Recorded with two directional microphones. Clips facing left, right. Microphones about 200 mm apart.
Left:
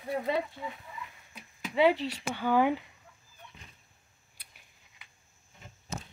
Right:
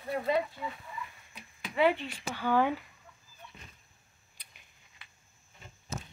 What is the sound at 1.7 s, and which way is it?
Speech, 35° left (ahead or behind).